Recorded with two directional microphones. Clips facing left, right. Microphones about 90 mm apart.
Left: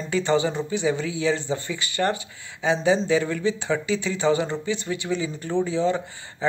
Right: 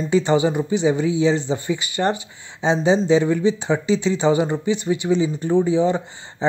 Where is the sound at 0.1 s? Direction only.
20° right (ahead or behind).